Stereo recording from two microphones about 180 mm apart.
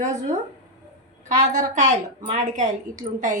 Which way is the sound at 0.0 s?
40° right (ahead or behind).